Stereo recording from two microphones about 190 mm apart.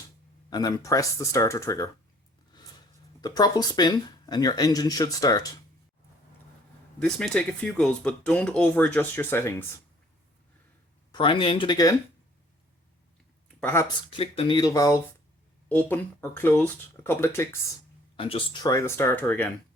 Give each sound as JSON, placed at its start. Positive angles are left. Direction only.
{"t": 0.5, "sound": "speech", "side_deg": 20}
{"t": 7.0, "sound": "speech", "side_deg": 5}
{"t": 11.1, "sound": "speech", "side_deg": 25}
{"t": 13.6, "sound": "speech", "side_deg": 10}
{"t": 14.1, "sound": "speech", "side_deg": 30}
{"t": 18.2, "sound": "speech", "side_deg": 30}